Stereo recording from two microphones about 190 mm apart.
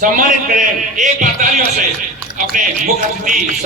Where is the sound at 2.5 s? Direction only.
45° right (ahead or behind).